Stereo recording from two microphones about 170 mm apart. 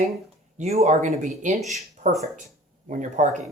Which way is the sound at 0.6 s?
40° right (ahead or behind).